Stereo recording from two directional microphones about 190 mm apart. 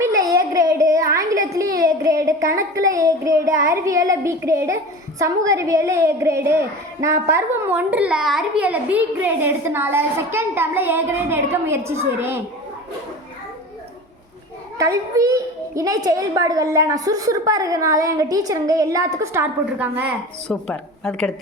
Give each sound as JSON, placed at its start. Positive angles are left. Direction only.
{"t": 0.0, "sound": "a sound", "side_deg": -20}
{"t": 1.5, "sound": "a child's voice", "side_deg": -20}
{"t": 14.8, "sound": "a woman's voice", "side_deg": -15}
{"t": 20.5, "sound": "a woman's voice", "side_deg": 0}